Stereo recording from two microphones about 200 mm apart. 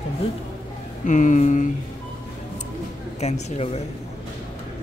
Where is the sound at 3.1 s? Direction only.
30° left (ahead or behind).